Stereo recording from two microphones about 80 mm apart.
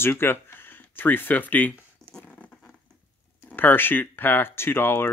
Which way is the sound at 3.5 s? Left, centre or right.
Left.